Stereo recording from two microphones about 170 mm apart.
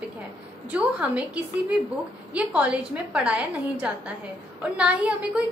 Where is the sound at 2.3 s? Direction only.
5° right (ahead or behind).